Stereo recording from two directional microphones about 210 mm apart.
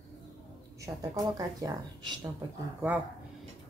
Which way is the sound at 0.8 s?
15° right (ahead or behind).